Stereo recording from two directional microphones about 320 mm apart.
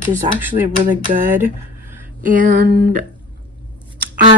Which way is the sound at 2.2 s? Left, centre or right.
Right.